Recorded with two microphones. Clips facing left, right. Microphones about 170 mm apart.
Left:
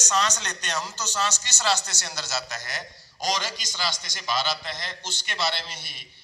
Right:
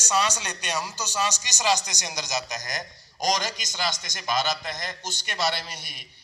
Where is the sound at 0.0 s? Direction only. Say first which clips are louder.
Right 1 dB; 10° right (ahead or behind).